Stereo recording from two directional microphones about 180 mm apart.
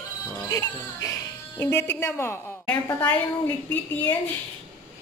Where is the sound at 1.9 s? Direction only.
15° left (ahead or behind).